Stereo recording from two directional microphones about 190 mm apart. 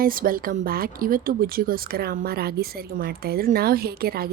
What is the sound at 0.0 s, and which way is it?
Speech, 50° right (ahead or behind).